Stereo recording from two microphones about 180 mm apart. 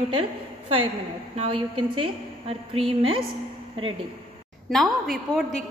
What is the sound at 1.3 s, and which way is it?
A woman's voice, 30° right (ahead or behind).